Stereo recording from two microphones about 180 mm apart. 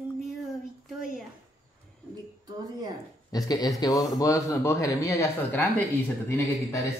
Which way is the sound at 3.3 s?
20° left (ahead or behind).